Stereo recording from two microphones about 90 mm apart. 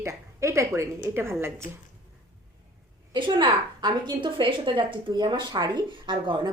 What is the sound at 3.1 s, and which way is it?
A woman's voice, 60° right (ahead or behind).